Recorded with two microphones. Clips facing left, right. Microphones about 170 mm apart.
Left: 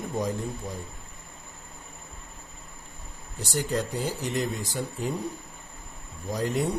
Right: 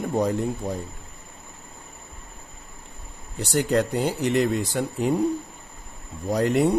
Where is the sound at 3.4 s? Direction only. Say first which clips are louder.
Right 7 dB; 70° right (ahead or behind).